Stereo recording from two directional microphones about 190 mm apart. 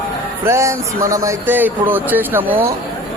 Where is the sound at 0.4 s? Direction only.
15° right (ahead or behind).